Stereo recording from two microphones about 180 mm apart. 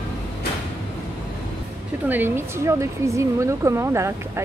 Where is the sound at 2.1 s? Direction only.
10° right (ahead or behind).